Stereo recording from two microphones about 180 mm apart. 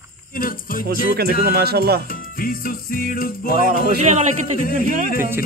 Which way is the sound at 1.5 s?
60° right (ahead or behind).